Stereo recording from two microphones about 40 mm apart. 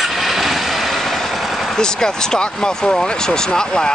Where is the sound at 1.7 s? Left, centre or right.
Centre.